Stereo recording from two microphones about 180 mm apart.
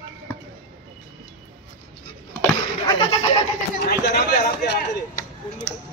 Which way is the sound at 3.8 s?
65° left (ahead or behind).